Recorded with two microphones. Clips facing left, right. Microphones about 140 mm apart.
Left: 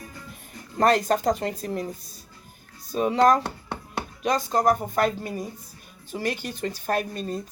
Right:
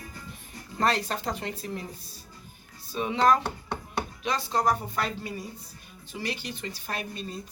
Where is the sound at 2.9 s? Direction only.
45° left (ahead or behind).